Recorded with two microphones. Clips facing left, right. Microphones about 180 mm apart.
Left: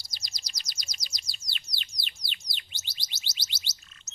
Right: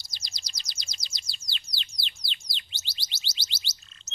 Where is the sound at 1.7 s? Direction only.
30° right (ahead or behind).